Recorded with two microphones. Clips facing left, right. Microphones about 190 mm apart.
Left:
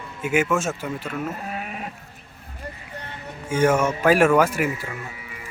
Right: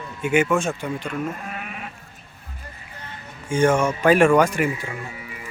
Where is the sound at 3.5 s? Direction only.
5° left (ahead or behind).